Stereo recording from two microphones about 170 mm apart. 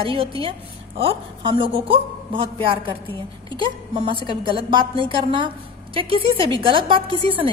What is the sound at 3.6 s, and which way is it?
A woman's voice, 30° right (ahead or behind).